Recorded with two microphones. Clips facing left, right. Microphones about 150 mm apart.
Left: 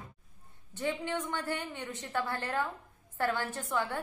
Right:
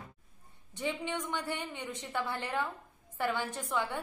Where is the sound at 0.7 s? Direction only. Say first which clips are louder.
Left 2 dB; 15° right (ahead or behind).